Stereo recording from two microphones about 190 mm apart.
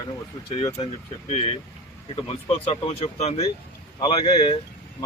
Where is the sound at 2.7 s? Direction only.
30° left (ahead or behind).